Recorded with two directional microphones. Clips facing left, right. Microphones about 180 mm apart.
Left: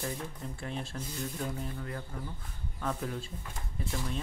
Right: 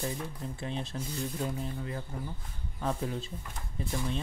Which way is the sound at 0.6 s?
20° right (ahead or behind).